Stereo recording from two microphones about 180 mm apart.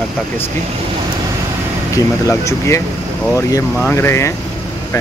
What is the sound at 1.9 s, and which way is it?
Speech, 15° left (ahead or behind).